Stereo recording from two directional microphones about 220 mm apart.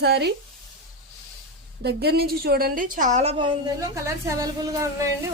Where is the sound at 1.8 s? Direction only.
45° right (ahead or behind).